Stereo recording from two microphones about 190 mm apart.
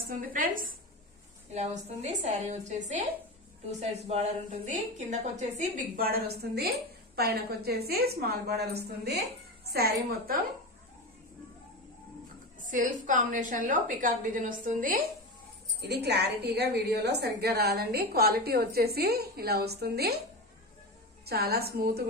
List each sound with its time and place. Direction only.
0.1 s a woman's voice: 45° right (ahead or behind)
1.5 s a woman's voice: 35° right (ahead or behind); by 9.9 s 55° right (ahead or behind)
12.5 s a woman's voice: 45° right (ahead or behind)
15.8 s a woman's voice: 60° right (ahead or behind)
21.3 s a woman's voice: 55° right (ahead or behind)